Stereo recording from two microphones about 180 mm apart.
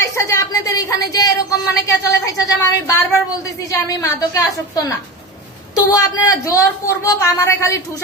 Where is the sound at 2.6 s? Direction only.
20° left (ahead or behind).